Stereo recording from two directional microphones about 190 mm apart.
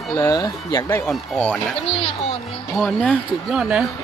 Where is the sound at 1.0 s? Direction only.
5° left (ahead or behind).